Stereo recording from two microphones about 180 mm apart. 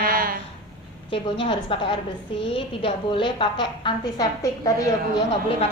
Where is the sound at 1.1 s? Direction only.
30° left (ahead or behind).